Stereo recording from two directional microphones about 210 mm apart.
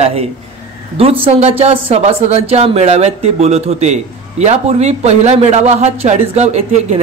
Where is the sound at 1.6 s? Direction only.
30° right (ahead or behind).